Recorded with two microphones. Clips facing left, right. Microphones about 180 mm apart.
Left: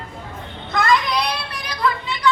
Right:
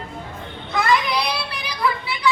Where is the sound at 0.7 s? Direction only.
10° right (ahead or behind).